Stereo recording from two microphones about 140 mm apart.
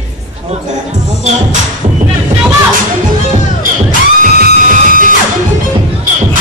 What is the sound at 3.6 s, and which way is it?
Music, 80° right.